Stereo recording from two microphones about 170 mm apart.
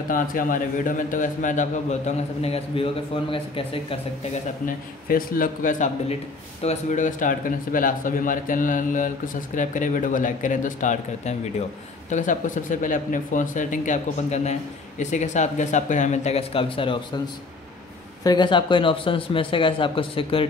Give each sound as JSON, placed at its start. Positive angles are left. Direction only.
{"t": 0.1, "sound": "speech", "side_deg": 55}
{"t": 4.6, "sound": "speech", "side_deg": 60}
{"t": 18.2, "sound": "a man's voice", "side_deg": 25}